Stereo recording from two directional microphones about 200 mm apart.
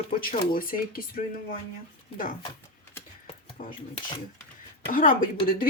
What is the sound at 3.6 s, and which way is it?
Speech, 40° left (ahead or behind).